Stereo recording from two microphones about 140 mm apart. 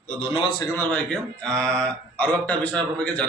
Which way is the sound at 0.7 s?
10° left (ahead or behind).